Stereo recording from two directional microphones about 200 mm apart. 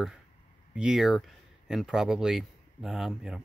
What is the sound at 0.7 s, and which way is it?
Speech, 5° right (ahead or behind).